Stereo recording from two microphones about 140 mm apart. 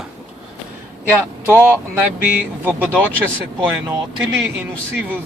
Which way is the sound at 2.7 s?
15° right (ahead or behind).